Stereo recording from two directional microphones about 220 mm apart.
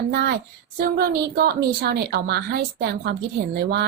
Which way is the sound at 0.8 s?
45° right (ahead or behind).